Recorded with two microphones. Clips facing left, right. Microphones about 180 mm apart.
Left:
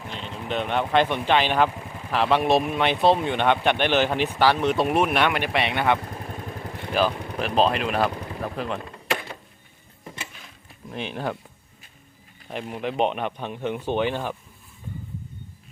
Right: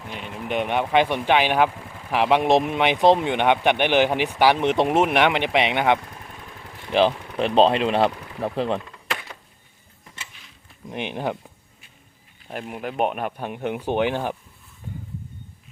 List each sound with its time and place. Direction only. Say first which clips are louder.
0.1 s speech: right 2 dB; 15° right (ahead or behind); by 8.8 s 30° right (ahead or behind)
10.2 s a sound: left 2 dB; 50° left (ahead or behind)
10.8 s speech: right 2 dB; 15° right (ahead or behind)
12.5 s speech: left 1 dB; 5° right (ahead or behind)